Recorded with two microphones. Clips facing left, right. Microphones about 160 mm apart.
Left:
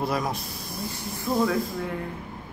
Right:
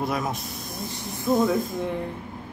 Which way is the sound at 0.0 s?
Centre (ahead or behind).